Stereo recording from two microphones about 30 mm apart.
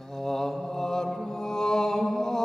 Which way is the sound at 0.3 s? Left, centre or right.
Centre.